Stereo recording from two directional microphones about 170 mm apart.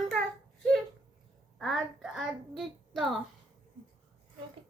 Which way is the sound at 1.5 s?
Centre (ahead or behind).